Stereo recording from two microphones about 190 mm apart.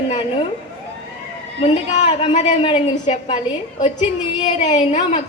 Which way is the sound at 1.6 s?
30° left (ahead or behind).